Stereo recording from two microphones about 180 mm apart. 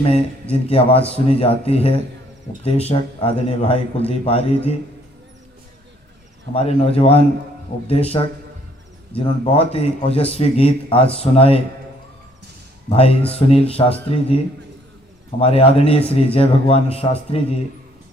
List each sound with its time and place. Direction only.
0.7 s speech: 30° left (ahead or behind)
6.5 s speech: 35° left (ahead or behind)
12.9 s speech: 30° left (ahead or behind)